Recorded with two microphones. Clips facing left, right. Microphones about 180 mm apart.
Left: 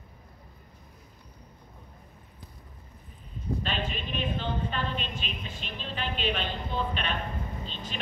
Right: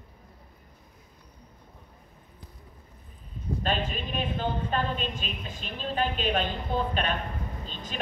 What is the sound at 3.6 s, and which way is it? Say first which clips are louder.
A woman's voice: right 3 dB; 45° right (ahead or behind).